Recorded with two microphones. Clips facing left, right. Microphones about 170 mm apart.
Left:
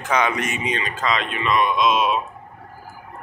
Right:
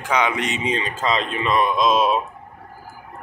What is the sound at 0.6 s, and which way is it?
Speech, 30° right (ahead or behind).